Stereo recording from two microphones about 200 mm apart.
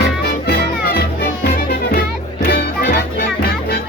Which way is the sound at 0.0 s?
50° left (ahead or behind).